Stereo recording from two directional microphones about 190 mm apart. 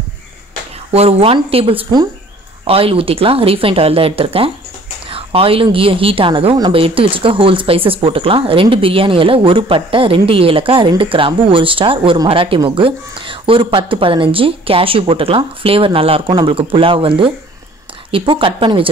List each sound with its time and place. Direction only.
0.9 s speech: 30° right (ahead or behind)
18.1 s speech: 25° right (ahead or behind)